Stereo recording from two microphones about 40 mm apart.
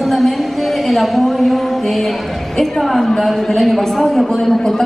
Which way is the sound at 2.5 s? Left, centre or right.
Centre.